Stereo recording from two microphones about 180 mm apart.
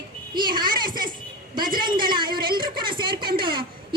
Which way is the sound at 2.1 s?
25° right (ahead or behind).